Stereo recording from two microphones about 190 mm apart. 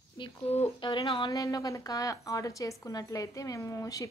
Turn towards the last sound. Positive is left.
turn(degrees=15)  # may be behind; listen again after turning